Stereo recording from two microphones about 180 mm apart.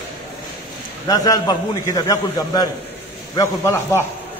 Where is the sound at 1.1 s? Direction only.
20° left (ahead or behind).